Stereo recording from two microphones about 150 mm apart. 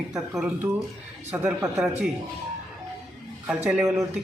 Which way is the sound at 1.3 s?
10° right (ahead or behind).